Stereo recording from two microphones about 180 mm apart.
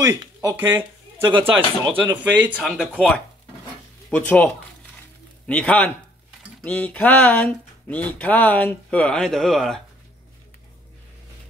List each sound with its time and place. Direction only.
0.0 s speech: 20° right (ahead or behind)
0.7 s speech: 30° right (ahead or behind)
2.3 s speech: 5° right (ahead or behind)
4.1 s speech: 10° left (ahead or behind)
5.5 s speech: 5° left (ahead or behind)